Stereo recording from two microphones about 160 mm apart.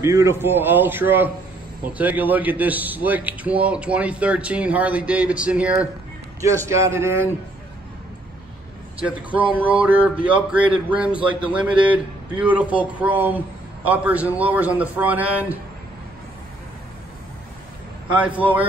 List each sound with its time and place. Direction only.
0.0 s a man's voice: 20° right (ahead or behind)
6.4 s a man's voice: 20° right (ahead or behind)
9.0 s a man's voice: 10° right (ahead or behind)
11.1 s a man's voice: 30° right (ahead or behind)
11.9 s a man's voice: 10° right (ahead or behind)
18.1 s a man's voice: 10° right (ahead or behind)